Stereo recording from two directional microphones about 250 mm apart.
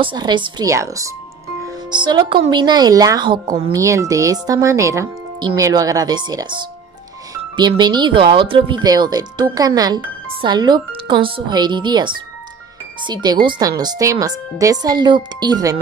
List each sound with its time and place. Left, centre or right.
0.0 s speech: centre